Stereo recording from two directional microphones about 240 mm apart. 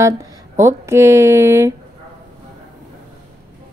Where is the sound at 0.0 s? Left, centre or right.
Centre.